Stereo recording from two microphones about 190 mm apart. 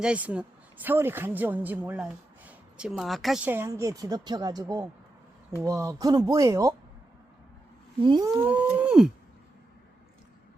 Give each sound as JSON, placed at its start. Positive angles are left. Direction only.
{"t": 0.0, "sound": "speech", "side_deg": -5}
{"t": 5.6, "sound": "speech", "side_deg": -15}
{"t": 8.0, "sound": "speech", "side_deg": -20}